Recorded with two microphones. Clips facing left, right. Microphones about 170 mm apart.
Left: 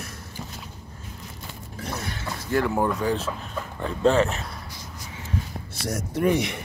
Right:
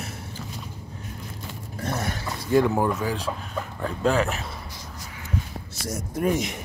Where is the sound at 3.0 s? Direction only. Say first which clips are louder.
Left 2 dB; centre (ahead or behind).